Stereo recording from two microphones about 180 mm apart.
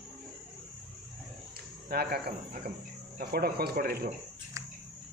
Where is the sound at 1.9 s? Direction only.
60° right (ahead or behind).